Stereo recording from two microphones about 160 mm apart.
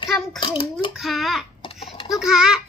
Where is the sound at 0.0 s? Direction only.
30° left (ahead or behind).